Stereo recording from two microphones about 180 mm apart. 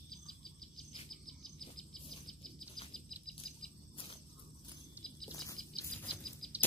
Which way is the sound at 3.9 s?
30° left (ahead or behind).